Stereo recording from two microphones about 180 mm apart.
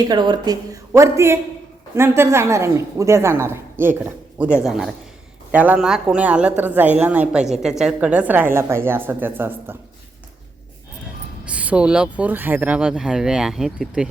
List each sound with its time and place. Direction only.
0.0 s a woman's voice: 25° right (ahead or behind)
11.4 s speech: 5° right (ahead or behind)